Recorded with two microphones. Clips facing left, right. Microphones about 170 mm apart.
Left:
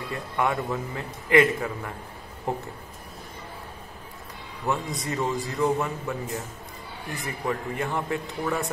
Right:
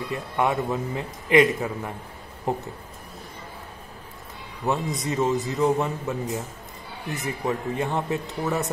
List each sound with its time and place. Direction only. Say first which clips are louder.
0.1 s a man's voice: right 2 dB; 20° right (ahead or behind)
4.7 s a man's voice: right 3 dB; 20° right (ahead or behind)